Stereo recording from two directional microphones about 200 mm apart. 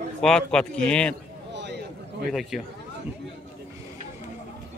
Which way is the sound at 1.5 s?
55° right (ahead or behind).